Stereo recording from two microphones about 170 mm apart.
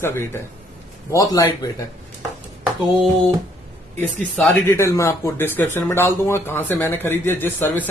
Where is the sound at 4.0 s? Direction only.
5° left (ahead or behind).